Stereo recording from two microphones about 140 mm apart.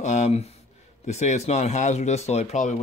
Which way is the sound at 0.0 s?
55° left (ahead or behind).